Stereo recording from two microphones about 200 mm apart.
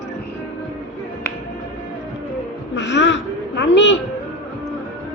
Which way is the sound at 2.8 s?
65° left (ahead or behind).